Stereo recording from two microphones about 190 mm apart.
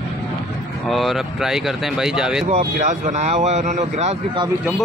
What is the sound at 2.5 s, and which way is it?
Speech, 40° right (ahead or behind).